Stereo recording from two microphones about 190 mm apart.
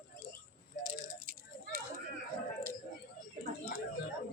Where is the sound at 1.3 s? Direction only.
45° right (ahead or behind).